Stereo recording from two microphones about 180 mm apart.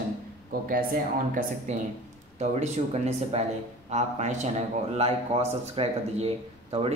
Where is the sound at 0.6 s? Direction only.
50° right (ahead or behind).